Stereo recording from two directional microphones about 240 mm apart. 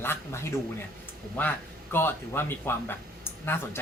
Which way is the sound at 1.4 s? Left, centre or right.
Centre.